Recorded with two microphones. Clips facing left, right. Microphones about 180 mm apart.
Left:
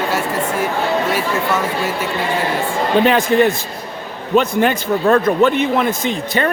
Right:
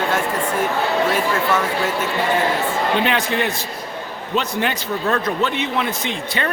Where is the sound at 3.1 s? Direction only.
45° left (ahead or behind).